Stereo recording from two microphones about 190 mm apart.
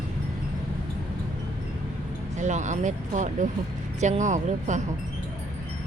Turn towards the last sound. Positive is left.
turn(degrees=-40)  # may be behind; listen again after turning